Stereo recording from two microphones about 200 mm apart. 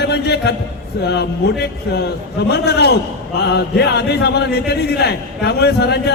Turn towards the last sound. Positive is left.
turn(degrees=55)  # may be behind; listen again after turning